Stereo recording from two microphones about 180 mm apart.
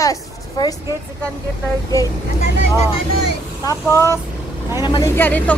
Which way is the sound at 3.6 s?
15° left (ahead or behind).